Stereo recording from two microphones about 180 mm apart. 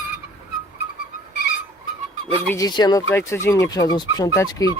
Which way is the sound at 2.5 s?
20° left (ahead or behind).